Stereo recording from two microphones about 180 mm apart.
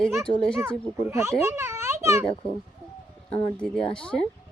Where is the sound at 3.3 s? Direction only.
30° left (ahead or behind).